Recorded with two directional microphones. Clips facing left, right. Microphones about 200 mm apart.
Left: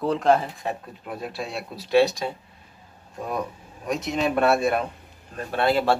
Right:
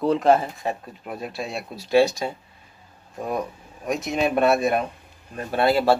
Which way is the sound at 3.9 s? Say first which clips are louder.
Right 1 dB; 10° right (ahead or behind).